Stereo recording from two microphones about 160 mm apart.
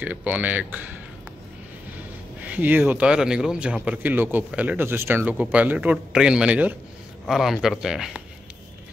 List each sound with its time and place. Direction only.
0.0 s speech: 10° right (ahead or behind)
2.4 s speech: 10° right (ahead or behind)